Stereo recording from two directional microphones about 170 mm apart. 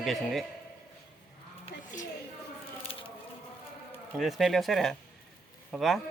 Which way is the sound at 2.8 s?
30° left (ahead or behind).